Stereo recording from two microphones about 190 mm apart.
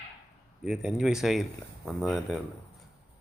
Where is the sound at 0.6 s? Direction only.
Centre (ahead or behind).